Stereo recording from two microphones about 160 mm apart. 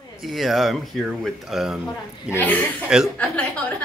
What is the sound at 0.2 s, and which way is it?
Speech, centre (ahead or behind).